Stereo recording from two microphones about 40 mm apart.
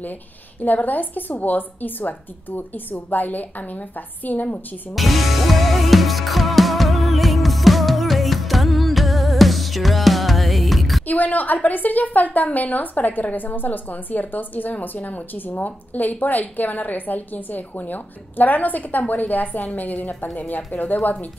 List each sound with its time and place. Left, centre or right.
0.6 s a woman's voice: left
4.9 s music: centre
11.1 s a woman's voice: left